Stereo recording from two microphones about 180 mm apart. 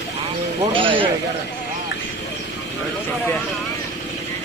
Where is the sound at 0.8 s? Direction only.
30° right (ahead or behind).